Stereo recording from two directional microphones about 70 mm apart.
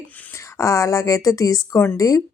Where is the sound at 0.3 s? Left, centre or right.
Left.